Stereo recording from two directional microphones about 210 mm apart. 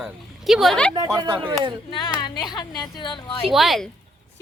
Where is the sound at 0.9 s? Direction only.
15° right (ahead or behind).